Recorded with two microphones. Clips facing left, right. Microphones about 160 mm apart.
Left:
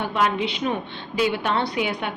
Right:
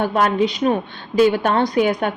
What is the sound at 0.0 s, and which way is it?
A woman's voice, 45° right (ahead or behind).